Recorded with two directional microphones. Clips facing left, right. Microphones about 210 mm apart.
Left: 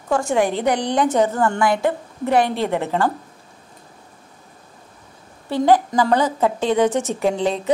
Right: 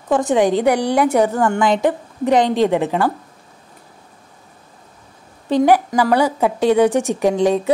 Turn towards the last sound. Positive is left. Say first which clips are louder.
# right 4 dB
turn(degrees=-15)  # may be behind; listen again after turning